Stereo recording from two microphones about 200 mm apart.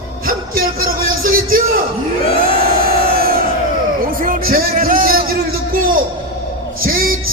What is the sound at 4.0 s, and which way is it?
Music, 45° right (ahead or behind).